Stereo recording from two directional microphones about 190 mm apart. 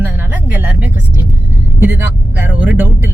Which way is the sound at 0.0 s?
10° right (ahead or behind).